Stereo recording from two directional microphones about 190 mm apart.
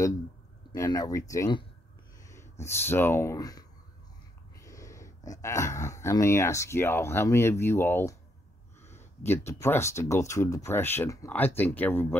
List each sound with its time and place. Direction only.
0.7 s speech: 15° left (ahead or behind)
2.2 s a sound: 15° left (ahead or behind)
2.6 s speech: 10° left (ahead or behind)